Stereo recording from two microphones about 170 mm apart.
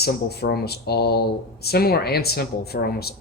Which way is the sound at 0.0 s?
70° left (ahead or behind).